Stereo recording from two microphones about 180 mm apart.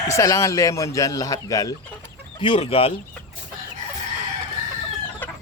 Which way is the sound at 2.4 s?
30° left (ahead or behind).